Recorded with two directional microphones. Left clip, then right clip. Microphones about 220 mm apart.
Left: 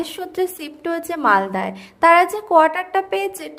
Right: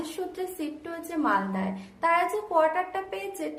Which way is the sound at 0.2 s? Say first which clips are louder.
Left 8 dB; 45° left (ahead or behind).